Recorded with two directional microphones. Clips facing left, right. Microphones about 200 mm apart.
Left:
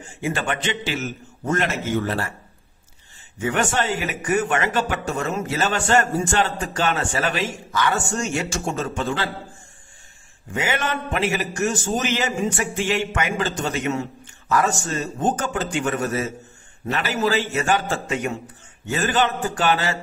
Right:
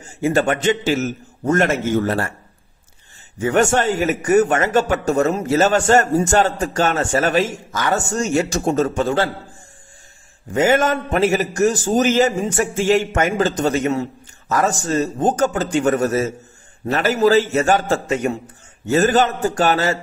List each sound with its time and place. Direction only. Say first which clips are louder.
0.2 s speech: right 8 dB; 40° right (ahead or behind)
3.3 s a man's voice: right 6 dB; 45° right (ahead or behind)
10.5 s a man's voice: right 9 dB; 45° right (ahead or behind)